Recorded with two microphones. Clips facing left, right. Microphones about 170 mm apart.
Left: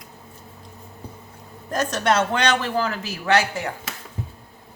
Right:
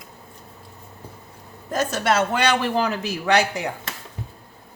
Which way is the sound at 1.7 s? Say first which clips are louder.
Even; 5° right (ahead or behind).